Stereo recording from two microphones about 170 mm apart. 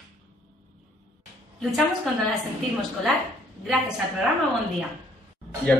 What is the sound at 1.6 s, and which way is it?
Speech, centre (ahead or behind).